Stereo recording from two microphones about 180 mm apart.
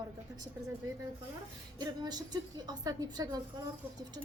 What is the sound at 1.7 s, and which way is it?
A woman's voice, 20° right (ahead or behind).